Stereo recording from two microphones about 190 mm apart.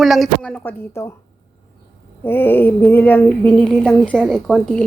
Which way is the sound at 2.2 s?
10° left (ahead or behind).